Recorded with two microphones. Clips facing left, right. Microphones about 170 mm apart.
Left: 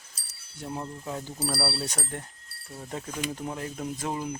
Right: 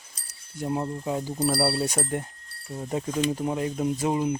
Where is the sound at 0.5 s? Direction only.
15° right (ahead or behind).